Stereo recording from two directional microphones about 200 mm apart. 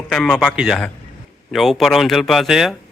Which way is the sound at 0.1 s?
5° left (ahead or behind).